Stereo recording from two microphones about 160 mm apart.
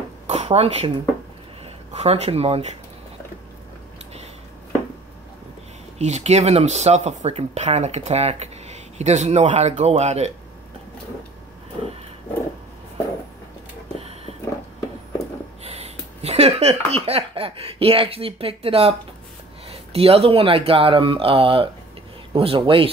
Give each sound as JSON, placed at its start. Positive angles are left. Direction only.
{"t": 0.3, "sound": "speech", "side_deg": -40}
{"t": 2.0, "sound": "speech", "side_deg": -40}
{"t": 5.9, "sound": "speech", "side_deg": -45}
{"t": 13.9, "sound": "a sound", "side_deg": -40}
{"t": 15.6, "sound": "a sound", "side_deg": -40}
{"t": 19.7, "sound": "speech", "side_deg": -40}